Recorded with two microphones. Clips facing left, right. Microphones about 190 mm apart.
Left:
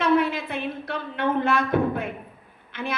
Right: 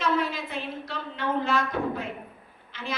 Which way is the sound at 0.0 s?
60° left (ahead or behind).